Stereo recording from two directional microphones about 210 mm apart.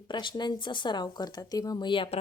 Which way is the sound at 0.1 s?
20° left (ahead or behind).